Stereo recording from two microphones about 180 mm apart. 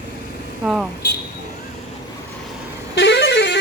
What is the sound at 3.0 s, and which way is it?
Vehicle, 80° left.